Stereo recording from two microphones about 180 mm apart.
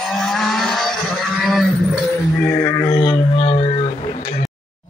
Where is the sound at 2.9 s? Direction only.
25° left (ahead or behind).